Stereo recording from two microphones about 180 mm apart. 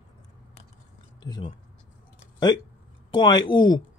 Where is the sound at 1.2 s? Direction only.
25° left (ahead or behind).